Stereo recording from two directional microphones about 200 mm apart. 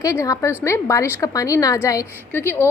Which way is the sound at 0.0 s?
15° left (ahead or behind).